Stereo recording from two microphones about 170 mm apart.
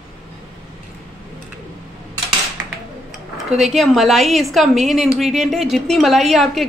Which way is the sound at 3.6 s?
Centre (ahead or behind).